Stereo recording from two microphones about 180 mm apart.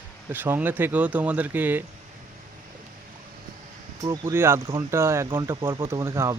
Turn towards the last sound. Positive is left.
turn(degrees=-15)  # may be behind; listen again after turning